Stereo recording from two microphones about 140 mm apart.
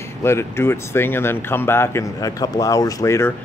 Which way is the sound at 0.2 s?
20° left (ahead or behind).